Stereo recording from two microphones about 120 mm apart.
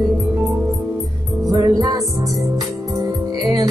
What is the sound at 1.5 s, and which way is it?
Music, 30° right (ahead or behind).